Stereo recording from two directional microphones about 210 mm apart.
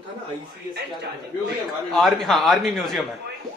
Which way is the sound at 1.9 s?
Centre (ahead or behind).